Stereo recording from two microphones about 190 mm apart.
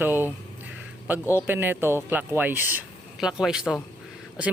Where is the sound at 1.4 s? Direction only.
10° right (ahead or behind).